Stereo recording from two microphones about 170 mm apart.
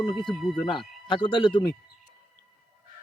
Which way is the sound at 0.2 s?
Centre (ahead or behind).